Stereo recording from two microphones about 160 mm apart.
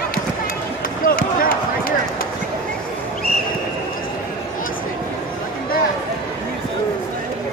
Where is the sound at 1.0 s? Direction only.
60° left (ahead or behind).